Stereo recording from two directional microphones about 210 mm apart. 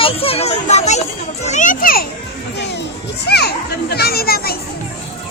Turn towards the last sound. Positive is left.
turn(degrees=45)  # may be behind; listen again after turning